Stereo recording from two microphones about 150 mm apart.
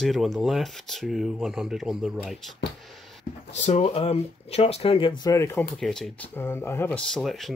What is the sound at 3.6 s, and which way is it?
Speech, 45° left (ahead or behind).